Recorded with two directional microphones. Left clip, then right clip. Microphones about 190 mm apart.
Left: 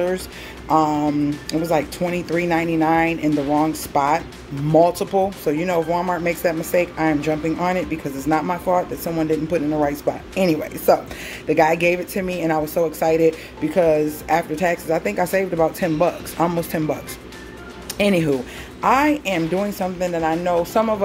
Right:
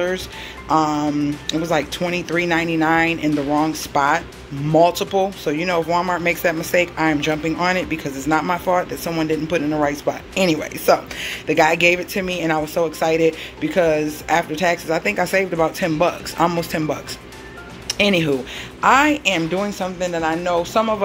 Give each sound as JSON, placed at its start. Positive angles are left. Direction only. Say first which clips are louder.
{"t": 0.7, "sound": "speech", "louder": "even", "side_deg": 10}